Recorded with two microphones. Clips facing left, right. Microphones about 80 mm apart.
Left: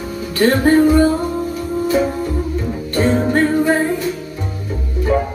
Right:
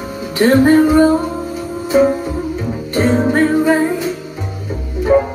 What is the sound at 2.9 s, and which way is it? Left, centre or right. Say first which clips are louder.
Music: right 2 dB; right.